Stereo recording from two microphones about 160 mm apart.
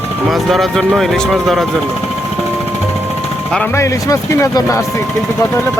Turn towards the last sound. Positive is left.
turn(degrees=20)  # may be behind; listen again after turning